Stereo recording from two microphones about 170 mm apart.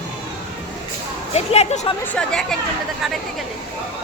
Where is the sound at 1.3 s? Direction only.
40° left (ahead or behind).